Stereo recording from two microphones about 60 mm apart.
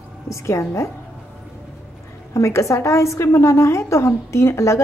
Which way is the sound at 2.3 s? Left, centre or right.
Left.